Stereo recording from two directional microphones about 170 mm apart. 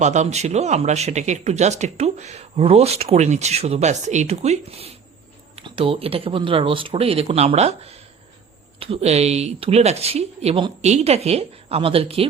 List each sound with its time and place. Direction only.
0.0 s speech: 45° right (ahead or behind)